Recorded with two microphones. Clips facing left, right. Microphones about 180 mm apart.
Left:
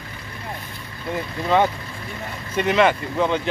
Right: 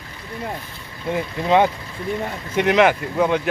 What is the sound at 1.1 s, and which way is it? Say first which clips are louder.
Speech: right 2 dB; 15° right (ahead or behind).